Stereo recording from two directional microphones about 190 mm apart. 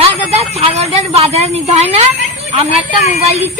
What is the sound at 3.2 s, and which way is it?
Speech, 35° right (ahead or behind).